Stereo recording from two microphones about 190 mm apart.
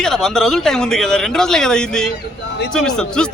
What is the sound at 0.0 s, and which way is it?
Speech, centre (ahead or behind).